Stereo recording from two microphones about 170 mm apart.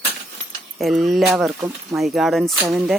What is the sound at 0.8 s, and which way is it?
Speech, centre (ahead or behind).